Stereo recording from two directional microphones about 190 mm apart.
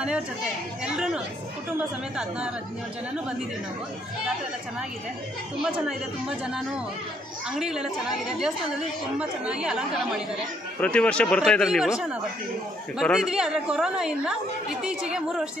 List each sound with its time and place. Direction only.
0.0 s a woman's voice: 5° right (ahead or behind)
5.6 s a woman's voice: 5° right (ahead or behind)